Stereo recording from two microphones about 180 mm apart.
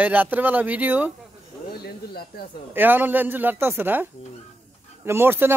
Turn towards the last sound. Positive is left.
turn(degrees=-10)  # may be behind; listen again after turning